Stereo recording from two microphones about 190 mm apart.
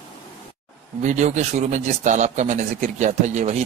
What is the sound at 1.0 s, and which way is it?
Speech, 40° right (ahead or behind).